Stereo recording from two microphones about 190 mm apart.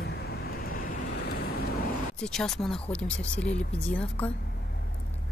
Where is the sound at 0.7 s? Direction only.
50° left (ahead or behind).